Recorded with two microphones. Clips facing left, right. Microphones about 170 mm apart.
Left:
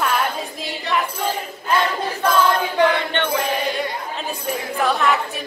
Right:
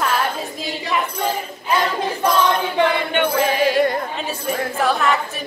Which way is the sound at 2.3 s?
20° right (ahead or behind).